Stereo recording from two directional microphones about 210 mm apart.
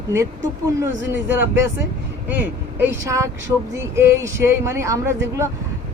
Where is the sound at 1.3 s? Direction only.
10° right (ahead or behind).